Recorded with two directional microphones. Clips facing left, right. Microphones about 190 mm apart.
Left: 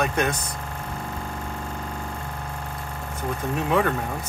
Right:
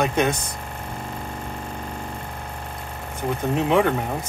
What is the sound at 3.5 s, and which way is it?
Speech, 20° right (ahead or behind).